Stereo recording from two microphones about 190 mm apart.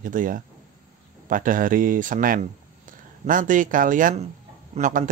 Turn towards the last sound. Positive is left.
turn(degrees=-45)  # may be behind; listen again after turning